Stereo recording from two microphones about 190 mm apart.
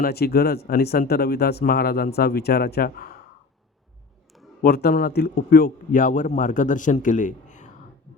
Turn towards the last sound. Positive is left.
turn(degrees=40)  # may be behind; listen again after turning